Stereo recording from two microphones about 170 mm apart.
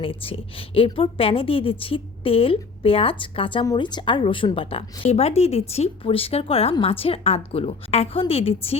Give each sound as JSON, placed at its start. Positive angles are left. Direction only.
{"t": 0.0, "sound": "a woman's voice", "side_deg": 30}